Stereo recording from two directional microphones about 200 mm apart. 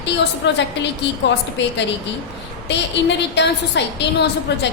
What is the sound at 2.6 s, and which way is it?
A woman's voice, 60° left (ahead or behind).